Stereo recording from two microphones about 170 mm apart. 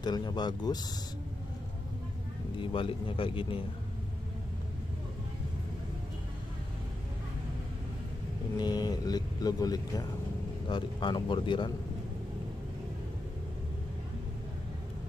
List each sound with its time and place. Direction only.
0.0 s speech: 25° left (ahead or behind)
2.6 s a man's voice: 30° left (ahead or behind)
8.5 s speech: 25° left (ahead or behind)